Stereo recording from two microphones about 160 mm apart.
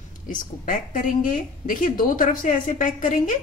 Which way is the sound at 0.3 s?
55° left (ahead or behind).